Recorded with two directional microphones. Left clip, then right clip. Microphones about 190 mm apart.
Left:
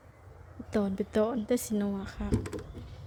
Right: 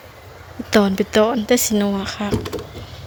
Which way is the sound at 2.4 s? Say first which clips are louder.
Right 12 dB; 55° left (ahead or behind).